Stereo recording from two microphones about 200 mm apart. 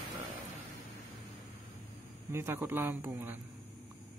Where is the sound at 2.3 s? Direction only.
10° right (ahead or behind).